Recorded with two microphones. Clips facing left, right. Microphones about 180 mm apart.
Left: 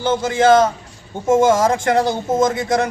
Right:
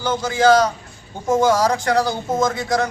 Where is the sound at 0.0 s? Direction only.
25° left (ahead or behind).